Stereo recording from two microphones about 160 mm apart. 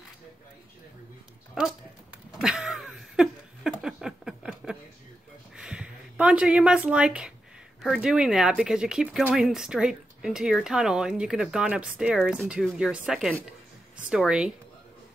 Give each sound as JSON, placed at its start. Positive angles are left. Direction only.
{"t": 2.4, "sound": "laughter", "side_deg": -5}
{"t": 3.8, "sound": "a sound", "side_deg": -5}
{"t": 5.6, "sound": "a woman's voice", "side_deg": -5}